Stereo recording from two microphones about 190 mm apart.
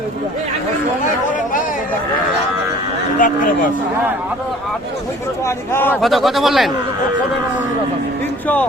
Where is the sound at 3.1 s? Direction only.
45° left (ahead or behind).